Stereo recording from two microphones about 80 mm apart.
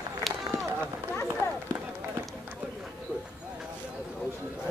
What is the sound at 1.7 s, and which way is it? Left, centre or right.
Run, right.